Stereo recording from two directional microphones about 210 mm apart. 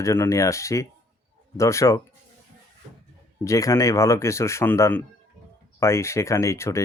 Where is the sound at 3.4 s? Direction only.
15° left (ahead or behind).